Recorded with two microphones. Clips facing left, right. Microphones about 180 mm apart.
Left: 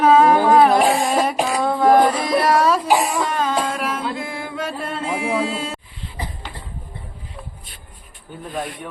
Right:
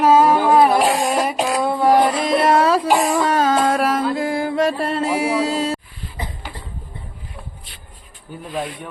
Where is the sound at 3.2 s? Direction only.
40° right (ahead or behind).